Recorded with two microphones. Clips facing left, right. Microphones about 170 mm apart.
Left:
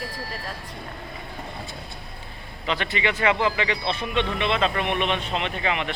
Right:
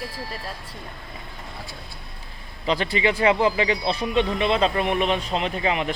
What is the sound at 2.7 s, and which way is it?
Speech, 35° right (ahead or behind).